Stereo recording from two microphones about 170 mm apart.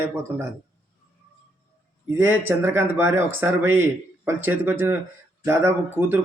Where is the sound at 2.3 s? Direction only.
10° right (ahead or behind).